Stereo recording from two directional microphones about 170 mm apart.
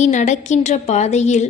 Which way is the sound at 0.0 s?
45° left (ahead or behind).